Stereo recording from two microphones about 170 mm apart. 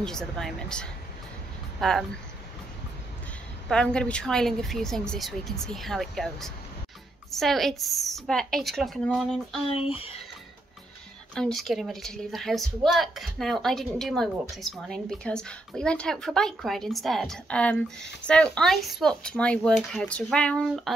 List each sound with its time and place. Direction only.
0.0 s a woman's voice: 5° left (ahead or behind)
3.6 s a woman's voice: 5° left (ahead or behind)
9.9 s speech: 35° left (ahead or behind)
11.3 s a woman's voice: centre (ahead or behind)